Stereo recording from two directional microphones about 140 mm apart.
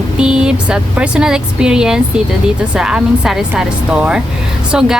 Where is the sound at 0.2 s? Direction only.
5° right (ahead or behind).